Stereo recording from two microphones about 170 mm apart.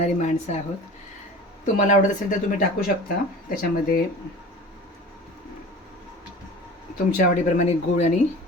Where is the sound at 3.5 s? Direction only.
55° left (ahead or behind).